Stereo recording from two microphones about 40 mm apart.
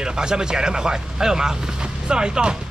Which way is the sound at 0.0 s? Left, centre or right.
Centre.